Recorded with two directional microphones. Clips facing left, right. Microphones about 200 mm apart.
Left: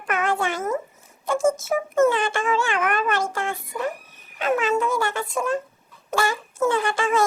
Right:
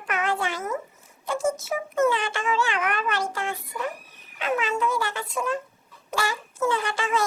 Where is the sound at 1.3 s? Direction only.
45° left (ahead or behind).